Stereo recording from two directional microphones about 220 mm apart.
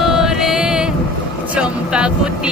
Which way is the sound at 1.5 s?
5° right (ahead or behind).